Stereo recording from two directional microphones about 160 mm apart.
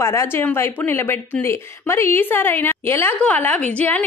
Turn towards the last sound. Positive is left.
turn(degrees=10)  # may be behind; listen again after turning